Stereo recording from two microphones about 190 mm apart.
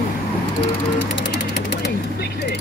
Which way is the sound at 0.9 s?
65° left (ahead or behind).